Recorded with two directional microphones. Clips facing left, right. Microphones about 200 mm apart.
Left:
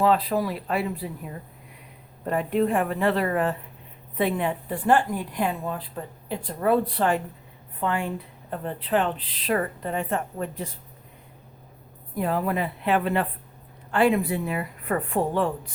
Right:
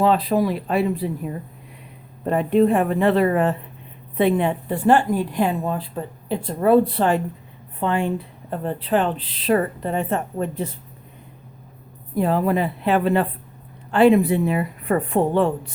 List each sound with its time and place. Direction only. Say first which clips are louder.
0.0 s speech: right 4 dB; 20° right (ahead or behind)
2.2 s speech: right 6 dB; 25° right (ahead or behind)
12.1 s speech: right 6 dB; 30° right (ahead or behind)